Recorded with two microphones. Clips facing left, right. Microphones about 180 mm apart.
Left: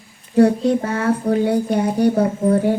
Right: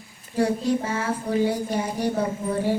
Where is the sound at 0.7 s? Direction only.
60° left (ahead or behind).